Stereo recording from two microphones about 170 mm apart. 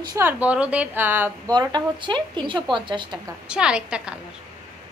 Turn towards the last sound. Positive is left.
turn(degrees=-5)  # may be behind; listen again after turning